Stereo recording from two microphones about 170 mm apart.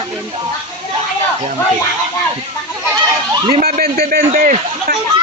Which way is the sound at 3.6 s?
60° right (ahead or behind).